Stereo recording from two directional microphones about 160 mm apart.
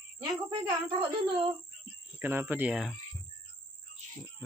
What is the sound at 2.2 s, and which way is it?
Speech, 15° right (ahead or behind).